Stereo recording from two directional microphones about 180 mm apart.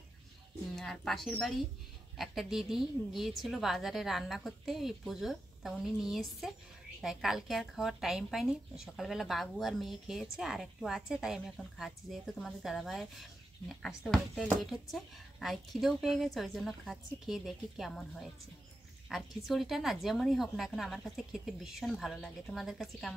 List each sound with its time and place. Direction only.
0.7 s speech: centre (ahead or behind)
19.0 s speech: centre (ahead or behind)